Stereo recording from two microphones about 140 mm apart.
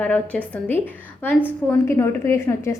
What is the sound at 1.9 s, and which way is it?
Speech, 20° left (ahead or behind).